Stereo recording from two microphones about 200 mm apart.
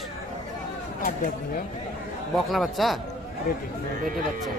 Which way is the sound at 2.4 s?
Centre (ahead or behind).